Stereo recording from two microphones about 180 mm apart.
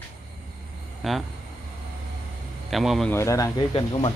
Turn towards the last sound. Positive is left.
turn(degrees=25)  # may be behind; listen again after turning